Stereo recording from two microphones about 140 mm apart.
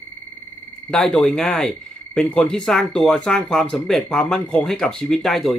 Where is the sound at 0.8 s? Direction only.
5° left (ahead or behind).